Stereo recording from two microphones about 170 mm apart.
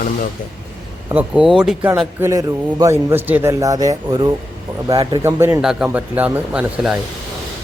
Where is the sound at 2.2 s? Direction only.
20° right (ahead or behind).